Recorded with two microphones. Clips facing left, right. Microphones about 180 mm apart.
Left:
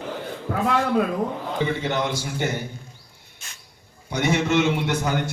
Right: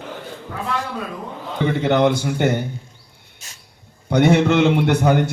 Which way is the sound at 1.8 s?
60° right (ahead or behind).